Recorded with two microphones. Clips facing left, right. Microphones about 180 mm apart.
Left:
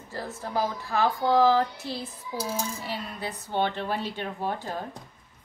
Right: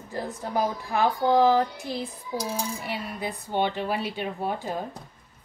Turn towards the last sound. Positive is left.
turn(degrees=-15)  # may be behind; listen again after turning